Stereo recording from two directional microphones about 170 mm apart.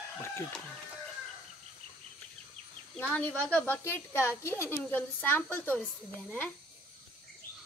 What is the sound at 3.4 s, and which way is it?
A woman's voice, 10° left (ahead or behind).